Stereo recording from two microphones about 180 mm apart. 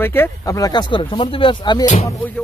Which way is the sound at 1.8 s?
40° left (ahead or behind).